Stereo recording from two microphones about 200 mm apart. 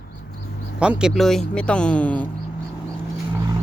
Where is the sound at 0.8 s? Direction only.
5° right (ahead or behind).